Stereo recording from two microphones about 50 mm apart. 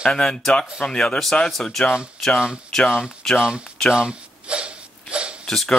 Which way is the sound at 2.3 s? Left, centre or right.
Centre.